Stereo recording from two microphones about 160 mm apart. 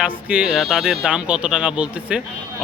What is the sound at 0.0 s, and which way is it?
Speech, 5° right (ahead or behind).